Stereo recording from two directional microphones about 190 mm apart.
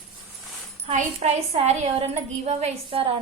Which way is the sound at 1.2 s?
35° right (ahead or behind).